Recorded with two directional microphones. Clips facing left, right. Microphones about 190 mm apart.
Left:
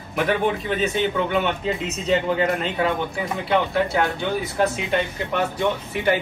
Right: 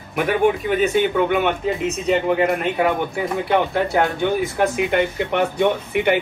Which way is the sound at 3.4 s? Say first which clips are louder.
Even; 20° right (ahead or behind).